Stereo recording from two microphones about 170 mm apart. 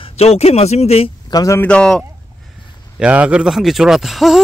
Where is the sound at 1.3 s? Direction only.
15° left (ahead or behind).